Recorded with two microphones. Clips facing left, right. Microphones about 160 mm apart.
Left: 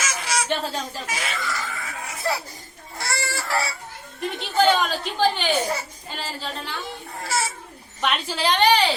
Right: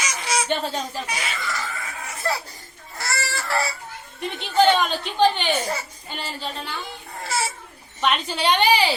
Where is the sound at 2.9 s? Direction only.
10° left (ahead or behind).